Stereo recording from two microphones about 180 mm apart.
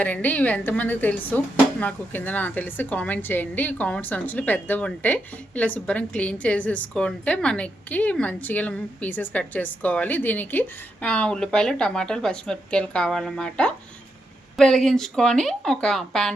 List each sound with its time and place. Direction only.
0.0 s a woman's voice: 10° left (ahead or behind)